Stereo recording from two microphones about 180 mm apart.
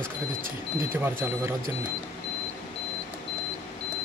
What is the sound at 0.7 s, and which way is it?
Speech, 15° right (ahead or behind).